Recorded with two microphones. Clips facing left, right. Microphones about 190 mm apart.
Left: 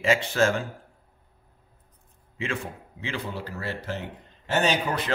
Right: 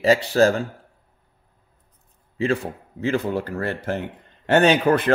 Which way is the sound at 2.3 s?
35° right (ahead or behind).